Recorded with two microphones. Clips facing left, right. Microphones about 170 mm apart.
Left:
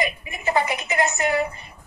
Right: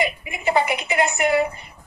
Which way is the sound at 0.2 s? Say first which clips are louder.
Right 2 dB; 15° right (ahead or behind).